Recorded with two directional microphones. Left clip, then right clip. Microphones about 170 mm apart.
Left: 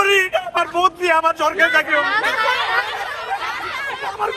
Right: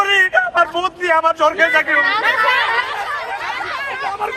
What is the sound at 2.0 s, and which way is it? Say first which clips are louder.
Speech: right 3 dB; 30° left (ahead or behind).